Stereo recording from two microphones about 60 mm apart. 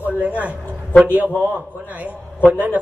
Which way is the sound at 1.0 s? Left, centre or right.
Right.